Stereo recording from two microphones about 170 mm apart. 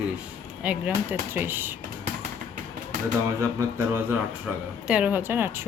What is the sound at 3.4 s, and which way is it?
Speech, 15° right (ahead or behind).